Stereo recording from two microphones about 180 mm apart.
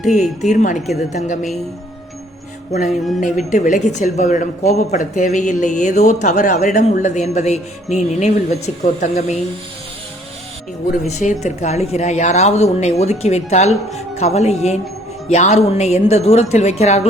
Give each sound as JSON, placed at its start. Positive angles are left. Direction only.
{"t": 0.0, "sound": "speech", "side_deg": 40}
{"t": 2.7, "sound": "a woman's voice", "side_deg": 40}
{"t": 11.0, "sound": "a woman's voice", "side_deg": 40}